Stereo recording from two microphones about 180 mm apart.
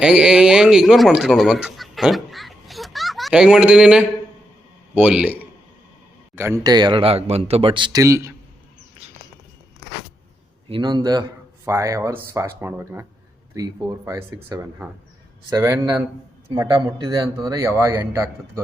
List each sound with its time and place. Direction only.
0.0 s a man's voice: 5° right (ahead or behind)
10.7 s a man's voice: 25° right (ahead or behind)